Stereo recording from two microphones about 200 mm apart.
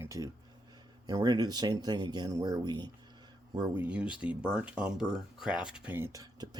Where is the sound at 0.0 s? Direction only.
15° right (ahead or behind).